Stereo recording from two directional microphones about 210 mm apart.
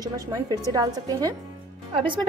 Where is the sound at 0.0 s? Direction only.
20° right (ahead or behind).